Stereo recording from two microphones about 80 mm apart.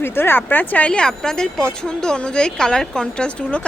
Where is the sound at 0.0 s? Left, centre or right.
Left.